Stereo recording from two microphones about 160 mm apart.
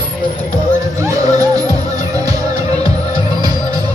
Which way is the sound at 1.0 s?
20° right (ahead or behind).